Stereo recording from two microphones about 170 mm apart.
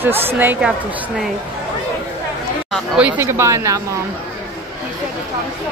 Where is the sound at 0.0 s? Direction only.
15° right (ahead or behind).